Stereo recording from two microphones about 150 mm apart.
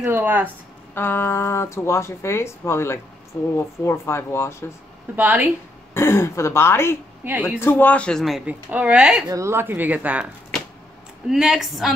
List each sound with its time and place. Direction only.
0.0 s speech: 15° right (ahead or behind)
0.9 s speech: 15° left (ahead or behind)
5.1 s speech: 10° right (ahead or behind)
5.9 s speech: 15° left (ahead or behind)
7.2 s speech: 15° right (ahead or behind)
7.6 s speech: 10° left (ahead or behind); by 9.2 s 5° right (ahead or behind)
9.3 s speech: 20° right (ahead or behind)
11.2 s speech: centre (ahead or behind)